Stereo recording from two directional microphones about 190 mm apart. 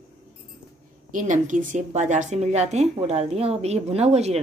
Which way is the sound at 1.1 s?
40° right (ahead or behind).